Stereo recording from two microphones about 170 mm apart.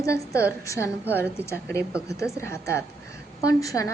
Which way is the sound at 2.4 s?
15° left (ahead or behind).